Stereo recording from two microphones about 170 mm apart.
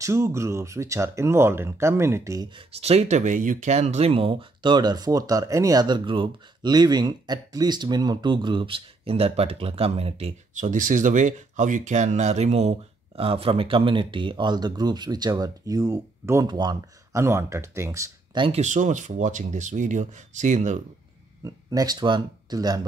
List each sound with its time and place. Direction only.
0.0 s speech: 15° right (ahead or behind)
2.5 s speech: 40° right (ahead or behind); by 18.4 s 15° right (ahead or behind)
18.4 s speech: 40° right (ahead or behind)
21.5 s speech: 20° right (ahead or behind)